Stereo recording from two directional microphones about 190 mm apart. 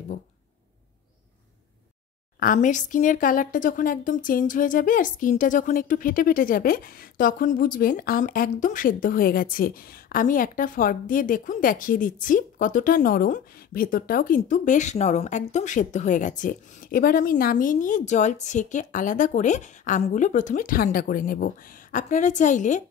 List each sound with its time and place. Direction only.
2.4 s a woman's voice: 45° left (ahead or behind)